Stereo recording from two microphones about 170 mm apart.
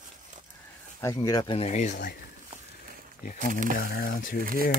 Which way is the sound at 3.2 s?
50° left (ahead or behind).